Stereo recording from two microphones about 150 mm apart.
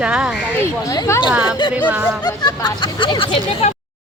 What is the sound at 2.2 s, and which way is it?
Speech, 25° left (ahead or behind).